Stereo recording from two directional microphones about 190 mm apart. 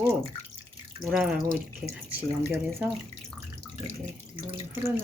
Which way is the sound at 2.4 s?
15° right (ahead or behind).